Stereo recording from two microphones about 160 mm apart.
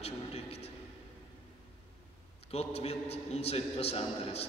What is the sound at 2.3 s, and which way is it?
A man's voice, 40° left (ahead or behind).